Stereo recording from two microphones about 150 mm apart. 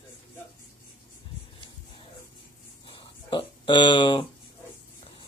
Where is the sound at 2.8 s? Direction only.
35° left (ahead or behind).